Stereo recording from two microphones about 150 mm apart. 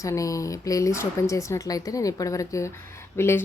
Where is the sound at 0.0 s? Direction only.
20° left (ahead or behind).